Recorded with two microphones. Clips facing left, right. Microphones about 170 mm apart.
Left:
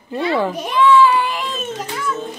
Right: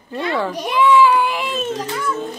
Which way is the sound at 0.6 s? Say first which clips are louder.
Even; 10° right (ahead or behind).